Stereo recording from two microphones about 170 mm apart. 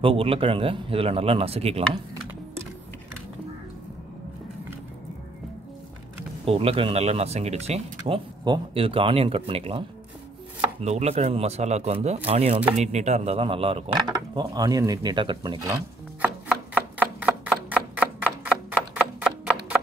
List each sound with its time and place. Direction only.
0.0 s speech: 35° right (ahead or behind)
6.4 s speech: 35° right (ahead or behind); by 16.3 s 20° right (ahead or behind)
16.4 s a sound: 10° right (ahead or behind)